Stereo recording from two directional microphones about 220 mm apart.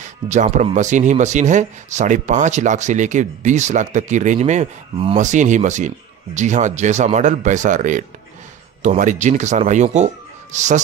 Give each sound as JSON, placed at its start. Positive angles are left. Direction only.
{"t": 0.0, "sound": "speech", "side_deg": -35}